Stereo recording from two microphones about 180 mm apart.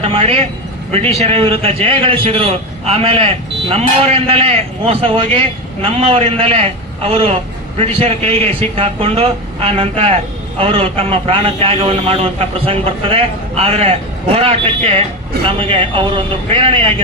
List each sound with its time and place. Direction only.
0.0 s a man's voice: 30° right (ahead or behind)